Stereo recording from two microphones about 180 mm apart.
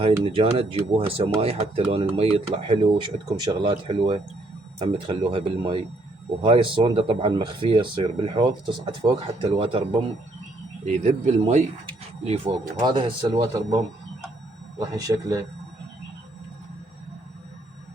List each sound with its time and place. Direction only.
0.0 s speech: 30° right (ahead or behind)
10.8 s speech: 40° right (ahead or behind)
12.8 s speech: 25° right (ahead or behind)
14.8 s speech: 20° right (ahead or behind)